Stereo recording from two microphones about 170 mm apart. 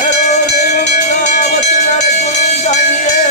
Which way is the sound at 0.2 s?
45° left (ahead or behind).